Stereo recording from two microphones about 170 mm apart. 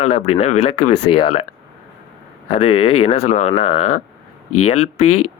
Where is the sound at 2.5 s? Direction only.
35° left (ahead or behind).